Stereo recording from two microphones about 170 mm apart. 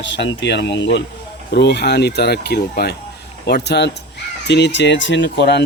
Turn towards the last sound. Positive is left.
turn(degrees=85)